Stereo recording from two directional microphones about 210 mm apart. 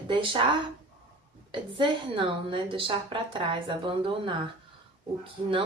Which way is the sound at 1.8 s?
25° right (ahead or behind).